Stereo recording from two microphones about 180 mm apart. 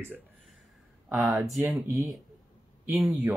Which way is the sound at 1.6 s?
15° right (ahead or behind).